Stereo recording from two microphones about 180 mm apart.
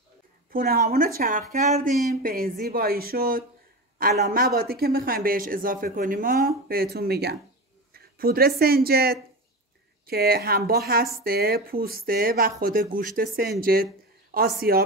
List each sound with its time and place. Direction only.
0.5 s speech: 55° right (ahead or behind)